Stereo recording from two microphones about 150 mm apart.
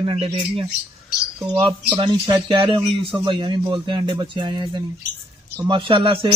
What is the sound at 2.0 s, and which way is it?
Speech, 35° right (ahead or behind).